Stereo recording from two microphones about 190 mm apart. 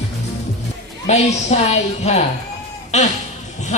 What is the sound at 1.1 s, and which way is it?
A woman's voice, 35° left (ahead or behind).